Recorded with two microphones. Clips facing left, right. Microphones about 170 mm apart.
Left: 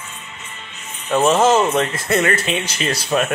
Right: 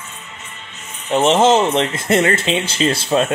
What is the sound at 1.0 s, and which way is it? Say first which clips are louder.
Speech: right 1 dB; 25° right (ahead or behind).